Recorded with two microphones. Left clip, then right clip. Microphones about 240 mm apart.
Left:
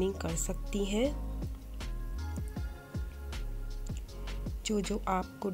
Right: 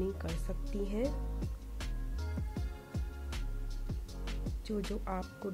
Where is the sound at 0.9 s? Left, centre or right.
Centre.